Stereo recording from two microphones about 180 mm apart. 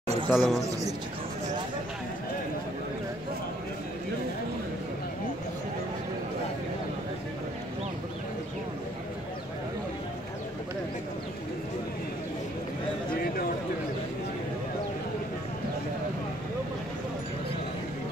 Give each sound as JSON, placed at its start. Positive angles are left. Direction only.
{"t": 0.3, "sound": "speech", "side_deg": 0}